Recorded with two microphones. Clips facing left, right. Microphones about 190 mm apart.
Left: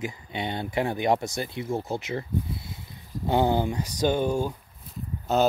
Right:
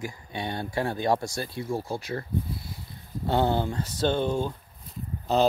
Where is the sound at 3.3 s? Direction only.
15° left (ahead or behind).